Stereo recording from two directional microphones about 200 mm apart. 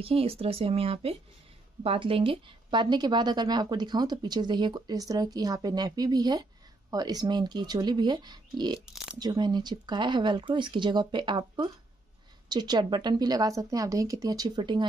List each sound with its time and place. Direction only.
0.0 s speech: 30° right (ahead or behind)